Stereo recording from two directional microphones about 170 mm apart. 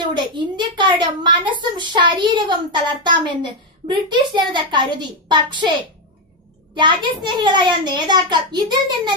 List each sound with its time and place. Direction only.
0.1 s a woman's voice: 25° right (ahead or behind)
6.7 s a woman's voice: 25° right (ahead or behind)